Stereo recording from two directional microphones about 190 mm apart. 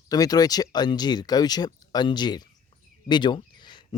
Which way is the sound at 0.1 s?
20° left (ahead or behind).